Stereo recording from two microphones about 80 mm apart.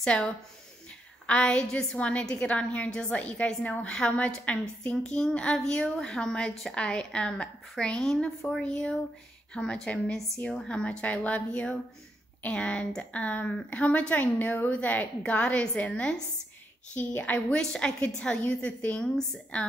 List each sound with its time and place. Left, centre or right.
0.0 s speech: centre